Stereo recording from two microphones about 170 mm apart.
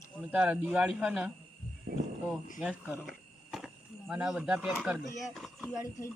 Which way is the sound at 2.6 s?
10° right (ahead or behind).